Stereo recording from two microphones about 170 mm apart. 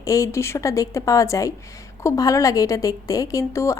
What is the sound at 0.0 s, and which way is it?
A woman's voice, 20° left (ahead or behind).